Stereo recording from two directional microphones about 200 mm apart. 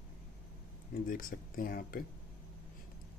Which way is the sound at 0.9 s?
45° left (ahead or behind).